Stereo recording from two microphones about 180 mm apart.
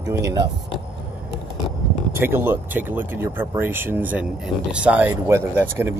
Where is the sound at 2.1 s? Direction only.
15° right (ahead or behind).